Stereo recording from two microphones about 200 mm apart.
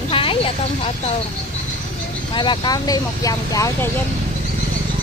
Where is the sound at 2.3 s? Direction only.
25° left (ahead or behind).